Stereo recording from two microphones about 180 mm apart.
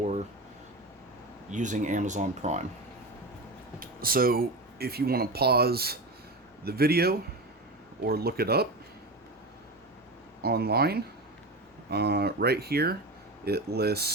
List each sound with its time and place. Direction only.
1.5 s speech: 45° right (ahead or behind)
3.8 s speech: 55° right (ahead or behind)
10.4 s speech: 60° right (ahead or behind)